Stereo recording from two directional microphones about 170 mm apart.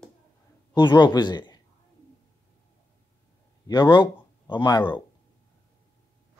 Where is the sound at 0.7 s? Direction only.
25° left (ahead or behind).